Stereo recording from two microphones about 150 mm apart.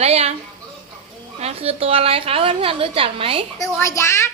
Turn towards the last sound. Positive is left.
turn(degrees=20)  # may be behind; listen again after turning